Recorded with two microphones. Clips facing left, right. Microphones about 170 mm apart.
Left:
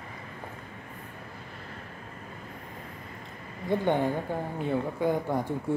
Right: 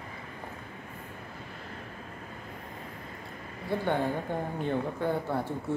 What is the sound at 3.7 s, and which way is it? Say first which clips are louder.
Speech: left 3 dB; 15° left (ahead or behind).